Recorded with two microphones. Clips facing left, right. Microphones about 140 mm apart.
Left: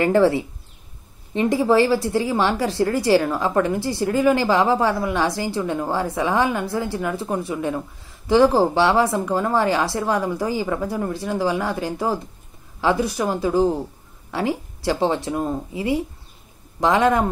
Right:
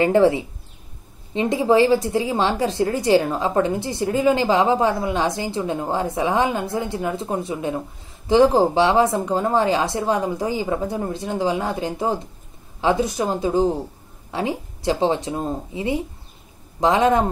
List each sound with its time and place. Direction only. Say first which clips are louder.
0.0 s speech: right 1 dB; 20° right (ahead or behind)